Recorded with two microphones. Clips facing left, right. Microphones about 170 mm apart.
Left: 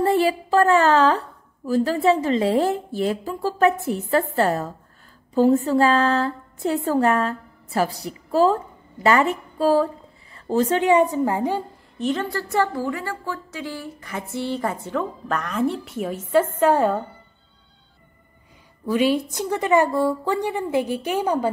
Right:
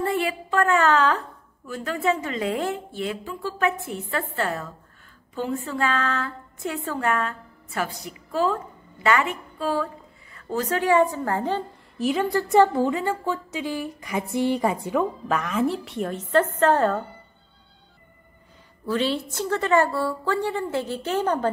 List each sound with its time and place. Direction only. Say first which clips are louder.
0.0 s a woman's voice: left 6 dB; 35° left (ahead or behind); by 11.6 s 15° left (ahead or behind)
12.0 s a woman's voice: right 2 dB; 10° right (ahead or behind); by 17.0 s 10° left (ahead or behind)
18.9 s a woman's voice: left 5 dB; 15° left (ahead or behind)